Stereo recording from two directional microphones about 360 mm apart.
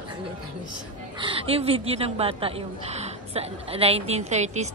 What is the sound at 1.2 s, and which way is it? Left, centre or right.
A woman's voice, centre.